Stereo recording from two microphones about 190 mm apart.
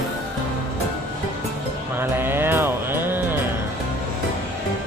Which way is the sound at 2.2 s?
10° right (ahead or behind).